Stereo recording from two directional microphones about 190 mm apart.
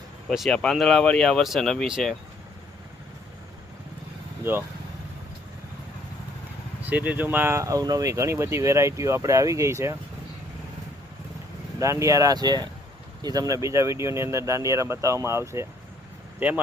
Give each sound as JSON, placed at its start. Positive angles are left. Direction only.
{"t": 0.3, "sound": "speech", "side_deg": 0}
{"t": 6.8, "sound": "speech", "side_deg": -10}
{"t": 11.8, "sound": "speech", "side_deg": -15}